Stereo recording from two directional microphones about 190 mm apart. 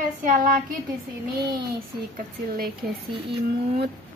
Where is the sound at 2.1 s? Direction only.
50° right (ahead or behind).